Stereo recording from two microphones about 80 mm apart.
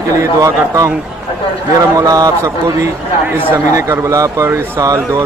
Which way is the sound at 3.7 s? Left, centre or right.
Right.